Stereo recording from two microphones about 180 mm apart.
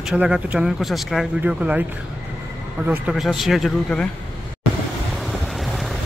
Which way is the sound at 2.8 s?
10° right (ahead or behind).